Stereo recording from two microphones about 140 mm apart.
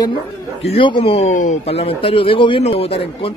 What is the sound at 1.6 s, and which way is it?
Speech, 45° left (ahead or behind).